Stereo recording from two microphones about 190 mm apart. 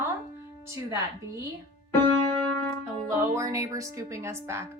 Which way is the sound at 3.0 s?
15° right (ahead or behind).